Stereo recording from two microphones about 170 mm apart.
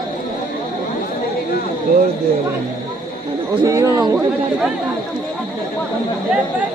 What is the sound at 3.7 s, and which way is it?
Speech, 20° right (ahead or behind).